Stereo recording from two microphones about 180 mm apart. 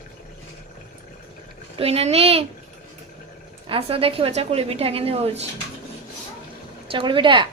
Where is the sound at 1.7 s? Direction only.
35° right (ahead or behind).